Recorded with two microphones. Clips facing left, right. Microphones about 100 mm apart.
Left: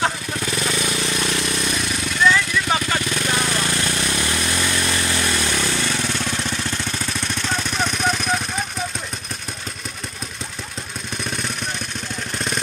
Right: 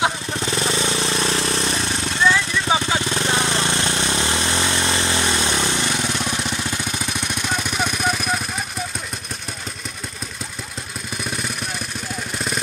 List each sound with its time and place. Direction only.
0.3 s vehicle: 25° right (ahead or behind); by 8.4 s 5° right (ahead or behind)